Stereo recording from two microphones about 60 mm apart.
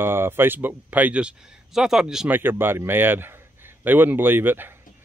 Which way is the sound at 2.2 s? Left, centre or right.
Right.